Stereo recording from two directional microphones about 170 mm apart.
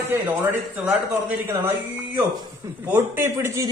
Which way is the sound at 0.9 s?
10° right (ahead or behind).